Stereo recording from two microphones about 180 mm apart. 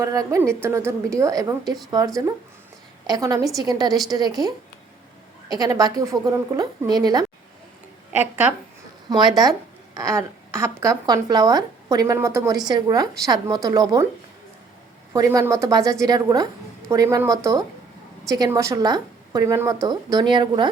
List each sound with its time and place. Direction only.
0.0 s a woman's voice: 15° right (ahead or behind)
3.1 s speech: 20° right (ahead or behind)
5.5 s speech: 20° right (ahead or behind)
8.1 s a woman's voice: 10° right (ahead or behind)
9.0 s speech: 20° right (ahead or behind)
15.1 s speech: 20° right (ahead or behind)